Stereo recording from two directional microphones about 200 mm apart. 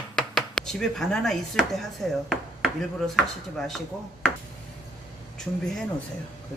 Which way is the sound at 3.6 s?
Centre (ahead or behind).